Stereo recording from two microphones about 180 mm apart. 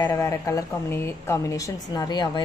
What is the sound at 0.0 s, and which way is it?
A woman's voice, 15° left (ahead or behind).